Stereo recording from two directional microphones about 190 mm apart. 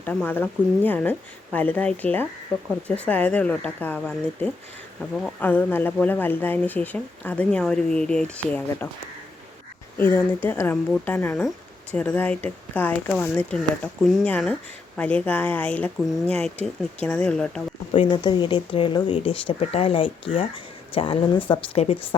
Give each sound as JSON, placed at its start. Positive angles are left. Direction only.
{"t": 0.0, "sound": "speech", "side_deg": 10}
{"t": 10.0, "sound": "speech", "side_deg": 10}
{"t": 17.9, "sound": "speech", "side_deg": 25}